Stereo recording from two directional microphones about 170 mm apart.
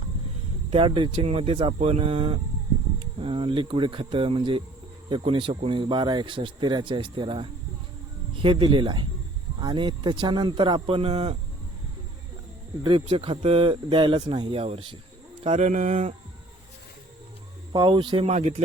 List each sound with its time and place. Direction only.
0.7 s speech: 30° right (ahead or behind)
12.8 s speech: 35° right (ahead or behind)
17.7 s speech: 30° right (ahead or behind)
18.3 s speech: 40° right (ahead or behind)